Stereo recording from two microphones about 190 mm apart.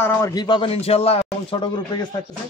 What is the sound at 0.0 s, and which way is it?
A man's voice, 10° left (ahead or behind).